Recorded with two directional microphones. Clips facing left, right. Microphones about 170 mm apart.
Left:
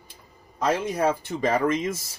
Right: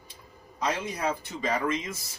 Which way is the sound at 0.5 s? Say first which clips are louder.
Left 6 dB; 50° left (ahead or behind).